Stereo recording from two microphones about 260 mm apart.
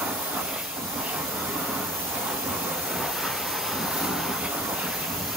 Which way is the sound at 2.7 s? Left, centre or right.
Centre.